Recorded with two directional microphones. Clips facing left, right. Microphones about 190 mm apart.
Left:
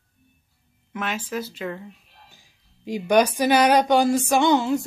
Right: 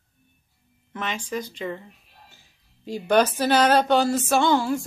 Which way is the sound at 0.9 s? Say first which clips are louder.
Left 1 dB; 5° left (ahead or behind).